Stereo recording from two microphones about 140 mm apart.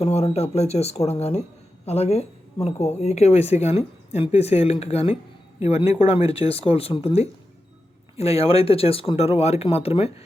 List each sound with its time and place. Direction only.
0.0 s speech: 45° left (ahead or behind)